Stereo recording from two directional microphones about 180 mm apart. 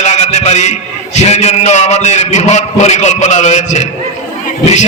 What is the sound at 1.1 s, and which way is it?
A man's voice, 40° left (ahead or behind).